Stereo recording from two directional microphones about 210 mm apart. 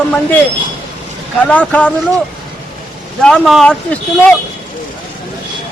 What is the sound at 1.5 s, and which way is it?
Speech, 5° left (ahead or behind).